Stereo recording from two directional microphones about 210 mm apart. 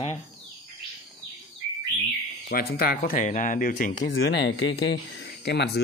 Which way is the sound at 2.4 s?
45° left (ahead or behind).